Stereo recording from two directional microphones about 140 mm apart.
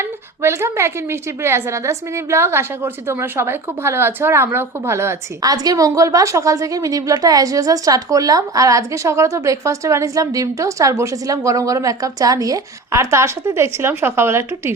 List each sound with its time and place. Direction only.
0.0 s a woman's voice: 20° right (ahead or behind)